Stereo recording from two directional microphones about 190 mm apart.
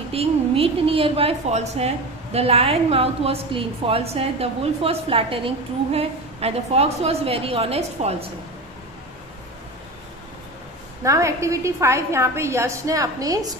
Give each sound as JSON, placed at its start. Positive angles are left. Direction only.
{"t": 0.1, "sound": "a woman's voice", "side_deg": -30}
{"t": 11.1, "sound": "a woman's voice", "side_deg": -15}